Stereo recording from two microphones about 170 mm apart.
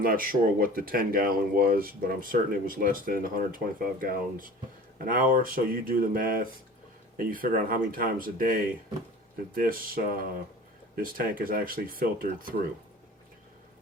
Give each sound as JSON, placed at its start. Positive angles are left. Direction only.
{"t": 0.0, "sound": "speech", "side_deg": -55}